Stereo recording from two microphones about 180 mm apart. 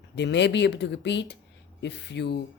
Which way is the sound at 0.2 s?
70° left (ahead or behind).